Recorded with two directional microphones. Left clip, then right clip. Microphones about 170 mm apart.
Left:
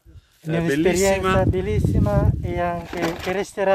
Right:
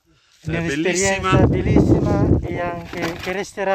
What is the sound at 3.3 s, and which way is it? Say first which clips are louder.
Speech: left 1 dB; 20° right (ahead or behind).